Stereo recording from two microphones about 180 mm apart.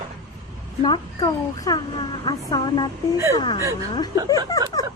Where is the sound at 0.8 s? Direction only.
25° left (ahead or behind).